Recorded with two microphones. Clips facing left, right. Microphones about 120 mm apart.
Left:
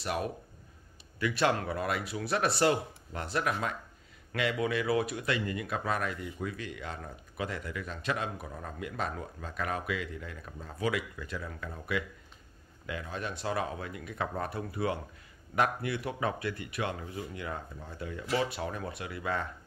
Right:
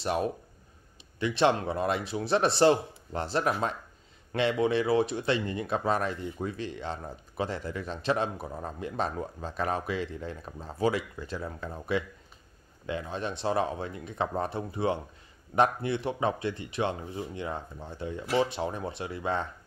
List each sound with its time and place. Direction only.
0.0 s speech: 30° right (ahead or behind)